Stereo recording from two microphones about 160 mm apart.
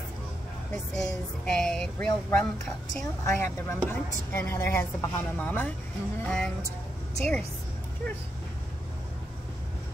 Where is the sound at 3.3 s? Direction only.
15° left (ahead or behind).